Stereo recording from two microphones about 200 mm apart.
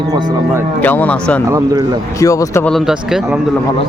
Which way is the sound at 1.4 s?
15° right (ahead or behind).